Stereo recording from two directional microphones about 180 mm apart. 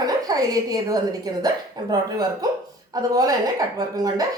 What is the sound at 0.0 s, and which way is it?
A woman's voice, 20° right (ahead or behind).